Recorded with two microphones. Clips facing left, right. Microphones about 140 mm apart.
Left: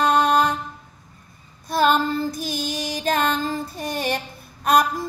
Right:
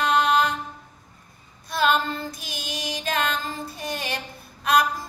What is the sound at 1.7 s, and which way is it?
Female singing, 40° left (ahead or behind).